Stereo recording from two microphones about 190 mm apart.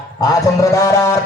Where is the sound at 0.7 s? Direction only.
15° left (ahead or behind).